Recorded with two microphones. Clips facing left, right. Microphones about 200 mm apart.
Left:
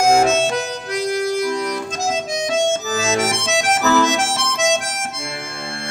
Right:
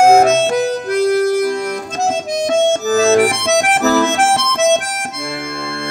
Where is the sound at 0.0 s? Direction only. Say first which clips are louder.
Right 5 dB; 60° right (ahead or behind).